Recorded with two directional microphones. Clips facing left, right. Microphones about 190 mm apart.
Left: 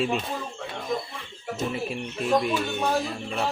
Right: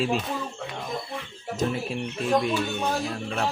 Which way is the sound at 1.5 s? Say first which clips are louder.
Right 3 dB; 5° left (ahead or behind).